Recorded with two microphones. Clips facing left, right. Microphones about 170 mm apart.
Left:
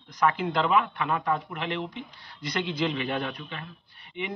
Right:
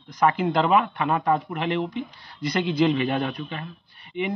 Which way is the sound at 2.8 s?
40° right (ahead or behind).